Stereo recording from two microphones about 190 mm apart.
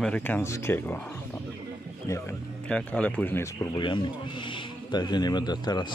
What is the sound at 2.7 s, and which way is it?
Speech, 5° left (ahead or behind).